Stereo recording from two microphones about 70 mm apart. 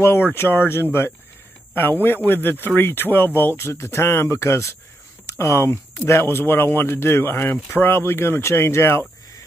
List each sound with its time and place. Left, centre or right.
0.0 s a man's voice: left